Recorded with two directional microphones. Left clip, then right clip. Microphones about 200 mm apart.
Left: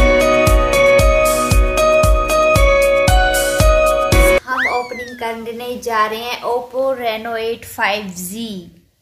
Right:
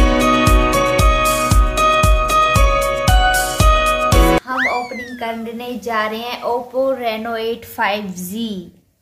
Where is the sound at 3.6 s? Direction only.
Centre (ahead or behind).